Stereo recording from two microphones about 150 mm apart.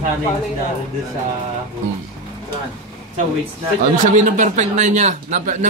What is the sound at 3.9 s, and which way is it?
A man's voice, 60° right (ahead or behind).